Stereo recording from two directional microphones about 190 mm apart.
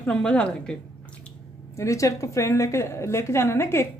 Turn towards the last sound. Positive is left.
turn(degrees=15)  # may be behind; listen again after turning